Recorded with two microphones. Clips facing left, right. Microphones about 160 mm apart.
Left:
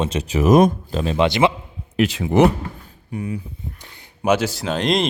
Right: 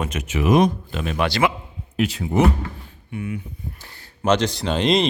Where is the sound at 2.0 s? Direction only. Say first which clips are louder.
Left 4 dB; 90° left.